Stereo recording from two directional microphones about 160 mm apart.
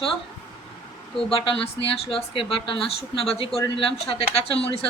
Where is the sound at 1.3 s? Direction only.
35° left (ahead or behind).